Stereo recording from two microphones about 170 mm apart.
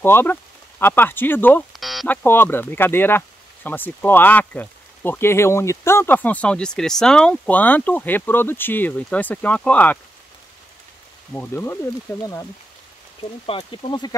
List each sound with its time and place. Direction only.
0.0 s speech: 15° left (ahead or behind)
1.7 s a sound: centre (ahead or behind)
2.0 s speech: 10° left (ahead or behind)
11.3 s speech: 15° left (ahead or behind)
13.5 s speech: 30° left (ahead or behind)